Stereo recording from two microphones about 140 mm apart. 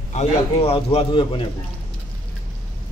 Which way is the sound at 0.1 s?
45° left (ahead or behind).